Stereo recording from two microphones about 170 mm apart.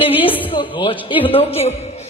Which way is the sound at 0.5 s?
30° left (ahead or behind).